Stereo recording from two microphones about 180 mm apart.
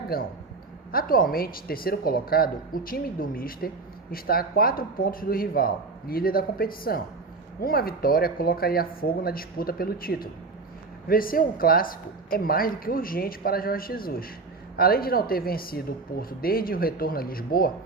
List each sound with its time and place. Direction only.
0.1 s speech: 55° left (ahead or behind)